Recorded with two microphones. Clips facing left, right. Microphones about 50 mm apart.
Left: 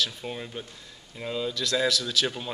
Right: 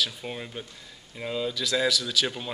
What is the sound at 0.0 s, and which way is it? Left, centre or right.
A man's voice, centre.